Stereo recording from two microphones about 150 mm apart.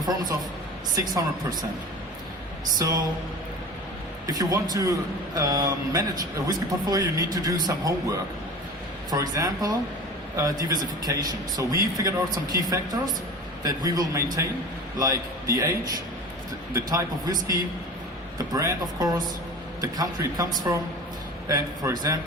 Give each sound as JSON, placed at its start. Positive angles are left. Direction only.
{"t": 0.0, "sound": "a man's voice", "side_deg": -25}
{"t": 2.7, "sound": "a man's voice", "side_deg": -25}
{"t": 4.3, "sound": "a man's voice", "side_deg": -25}
{"t": 9.0, "sound": "a man's voice", "side_deg": -25}
{"t": 18.5, "sound": "a man's voice", "side_deg": -25}